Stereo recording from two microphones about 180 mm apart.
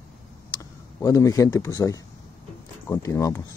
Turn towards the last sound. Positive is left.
turn(degrees=20)  # may be behind; listen again after turning